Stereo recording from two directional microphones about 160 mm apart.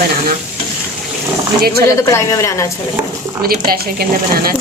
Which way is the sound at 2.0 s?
20° left (ahead or behind).